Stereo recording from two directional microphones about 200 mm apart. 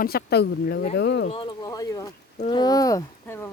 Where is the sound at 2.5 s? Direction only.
20° left (ahead or behind).